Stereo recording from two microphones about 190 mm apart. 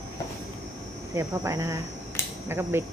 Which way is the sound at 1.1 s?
15° right (ahead or behind).